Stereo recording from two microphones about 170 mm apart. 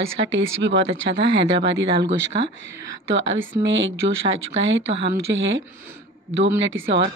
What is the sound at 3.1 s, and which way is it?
Speech, 90° right.